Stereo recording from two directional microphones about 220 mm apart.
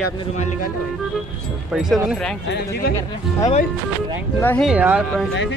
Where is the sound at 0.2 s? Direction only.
30° left (ahead or behind).